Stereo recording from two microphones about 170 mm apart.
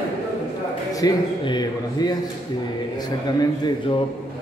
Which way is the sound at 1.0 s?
25° left (ahead or behind).